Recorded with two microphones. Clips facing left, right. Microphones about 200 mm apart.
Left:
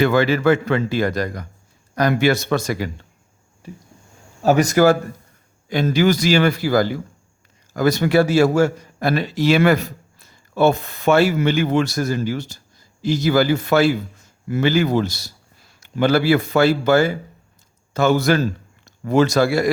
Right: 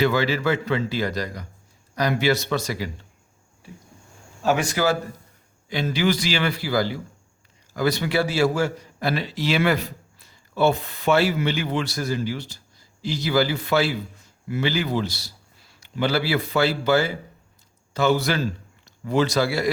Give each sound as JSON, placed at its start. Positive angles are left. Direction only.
{"t": 0.0, "sound": "a man's voice", "side_deg": 55}
{"t": 4.4, "sound": "a man's voice", "side_deg": 40}